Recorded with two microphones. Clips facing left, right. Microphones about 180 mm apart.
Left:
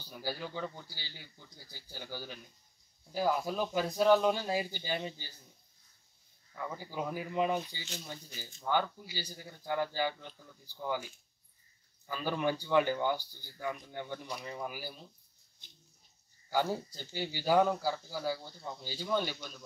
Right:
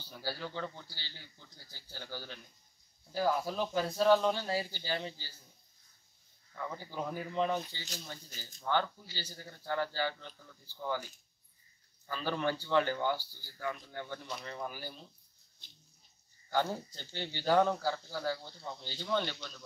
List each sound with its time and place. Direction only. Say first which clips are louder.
0.0 s speech: left 1 dB; 15° left (ahead or behind)
6.5 s speech: left 1 dB; 10° left (ahead or behind)
12.1 s speech: left 1 dB; 10° left (ahead or behind)
16.4 s speech: left 1 dB; 10° left (ahead or behind)